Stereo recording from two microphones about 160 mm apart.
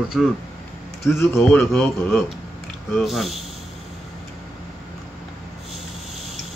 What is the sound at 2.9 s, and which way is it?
Mechanisms, centre (ahead or behind).